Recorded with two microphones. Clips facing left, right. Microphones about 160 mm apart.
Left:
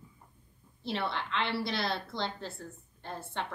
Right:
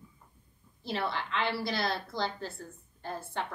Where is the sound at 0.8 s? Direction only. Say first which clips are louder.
Right 1 dB; centre (ahead or behind).